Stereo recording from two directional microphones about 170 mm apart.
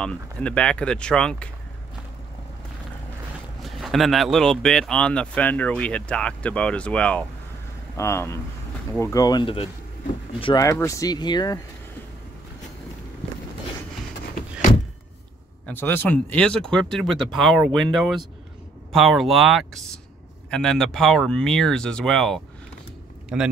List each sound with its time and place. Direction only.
0.0 s speech: 5° left (ahead or behind)
3.6 s speech: centre (ahead or behind); by 11.6 s 25° left (ahead or behind)
15.6 s speech: 10° left (ahead or behind)